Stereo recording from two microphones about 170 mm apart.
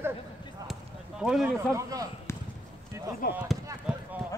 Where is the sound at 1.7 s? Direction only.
20° right (ahead or behind).